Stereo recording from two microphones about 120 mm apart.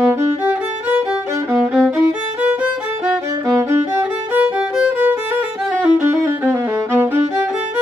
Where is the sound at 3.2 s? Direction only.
25° right (ahead or behind).